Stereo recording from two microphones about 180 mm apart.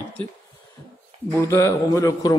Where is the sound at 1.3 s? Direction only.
15° left (ahead or behind).